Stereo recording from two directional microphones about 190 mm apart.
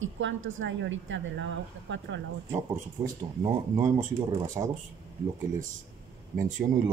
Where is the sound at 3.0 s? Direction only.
15° right (ahead or behind).